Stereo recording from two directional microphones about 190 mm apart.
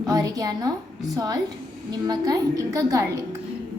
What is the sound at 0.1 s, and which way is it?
A woman's voice, 20° right (ahead or behind).